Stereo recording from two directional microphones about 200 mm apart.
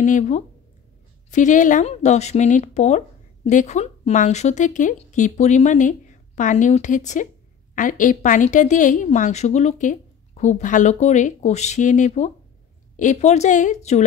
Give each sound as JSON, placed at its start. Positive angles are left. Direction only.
{"t": 0.0, "sound": "a woman's voice", "side_deg": 35}